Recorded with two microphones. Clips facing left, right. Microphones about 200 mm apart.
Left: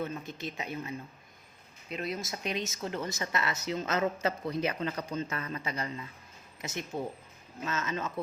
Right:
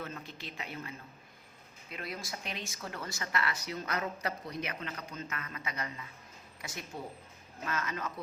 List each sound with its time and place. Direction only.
0.0 s speech: 15° left (ahead or behind)